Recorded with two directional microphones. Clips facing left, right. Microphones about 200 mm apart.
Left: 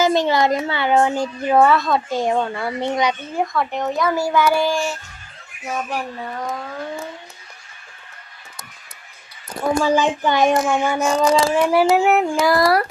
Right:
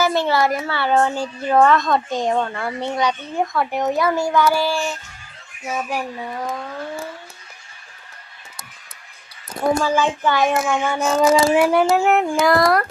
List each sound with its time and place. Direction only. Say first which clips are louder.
0.0 s a woman's voice: left 2 dB; 15° left (ahead or behind)
3.4 s speech: right 1 dB; centre (ahead or behind)
4.1 s a woman's voice: even; 5° left (ahead or behind)
5.6 s speech: right 1 dB; 5° right (ahead or behind)
9.8 s a woman's voice: left 1 dB; 15° left (ahead or behind)
11.0 s speech: right 3 dB; 5° right (ahead or behind)
11.8 s a woman's voice: left 1 dB; 10° left (ahead or behind)